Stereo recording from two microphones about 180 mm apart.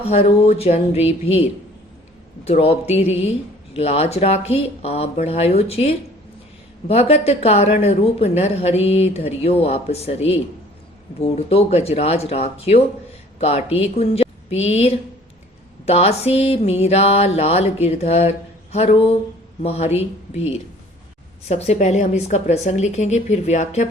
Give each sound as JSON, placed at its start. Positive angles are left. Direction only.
{"t": 0.1, "sound": "a woman's voice", "side_deg": 35}